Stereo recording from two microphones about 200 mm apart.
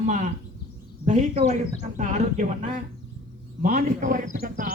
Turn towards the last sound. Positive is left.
turn(degrees=-45)  # may be behind; listen again after turning